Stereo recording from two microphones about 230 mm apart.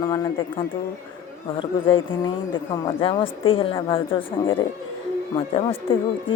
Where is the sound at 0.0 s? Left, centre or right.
Centre.